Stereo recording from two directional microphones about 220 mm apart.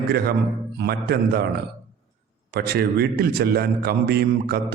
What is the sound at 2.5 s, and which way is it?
A man's voice, 45° right (ahead or behind).